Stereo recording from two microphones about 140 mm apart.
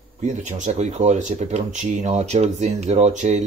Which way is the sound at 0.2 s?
60° right (ahead or behind).